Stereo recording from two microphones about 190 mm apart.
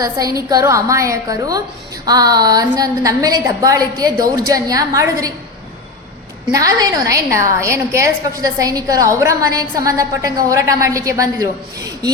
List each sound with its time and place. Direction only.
0.0 s a woman's voice: 20° right (ahead or behind)
6.5 s a woman's voice: 15° right (ahead or behind)